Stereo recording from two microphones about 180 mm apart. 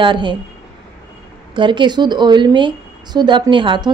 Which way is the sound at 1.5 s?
25° right (ahead or behind).